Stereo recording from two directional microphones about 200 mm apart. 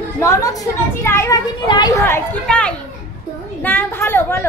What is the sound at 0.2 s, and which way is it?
Speech, 15° left (ahead or behind).